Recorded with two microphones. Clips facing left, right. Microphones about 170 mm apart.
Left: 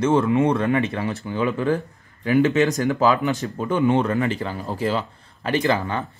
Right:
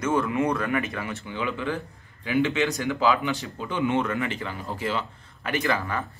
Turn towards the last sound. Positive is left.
turn(degrees=25)  # may be behind; listen again after turning